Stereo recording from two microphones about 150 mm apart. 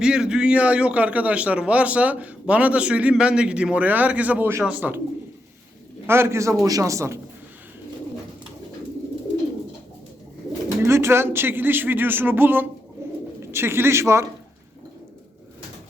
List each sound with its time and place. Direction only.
0.0 s a man's voice: 5° right (ahead or behind)
6.1 s a man's voice: 15° right (ahead or behind)
10.8 s a man's voice: 15° right (ahead or behind)
13.0 s bird: 15° right (ahead or behind)
13.4 s a man's voice: 15° right (ahead or behind)